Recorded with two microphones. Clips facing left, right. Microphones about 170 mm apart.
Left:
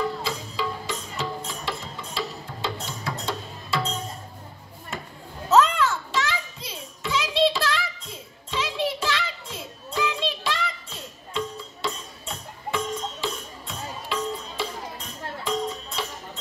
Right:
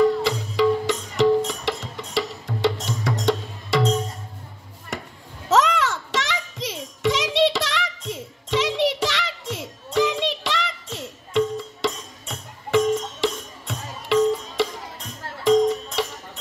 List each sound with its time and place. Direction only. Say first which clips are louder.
0.2 s music: right 9 dB; 75° right (ahead or behind)
5.5 s a sound: even; 85° right
15.4 s music: right 12 dB; 75° right (ahead or behind)